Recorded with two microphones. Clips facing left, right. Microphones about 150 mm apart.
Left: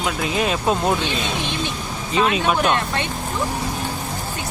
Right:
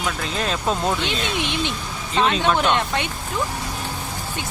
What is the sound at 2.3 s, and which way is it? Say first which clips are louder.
Speech: right 1 dB; 15° left (ahead or behind).